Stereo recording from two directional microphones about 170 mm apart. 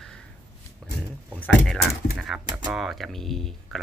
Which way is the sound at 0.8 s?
5° left (ahead or behind).